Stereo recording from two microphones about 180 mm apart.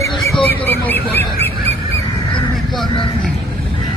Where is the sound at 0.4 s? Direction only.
10° left (ahead or behind).